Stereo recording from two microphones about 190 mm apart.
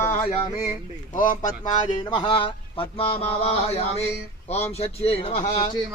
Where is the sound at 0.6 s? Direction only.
45° left (ahead or behind).